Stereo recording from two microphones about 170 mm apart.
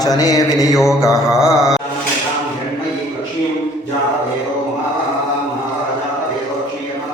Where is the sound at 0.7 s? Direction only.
Centre (ahead or behind).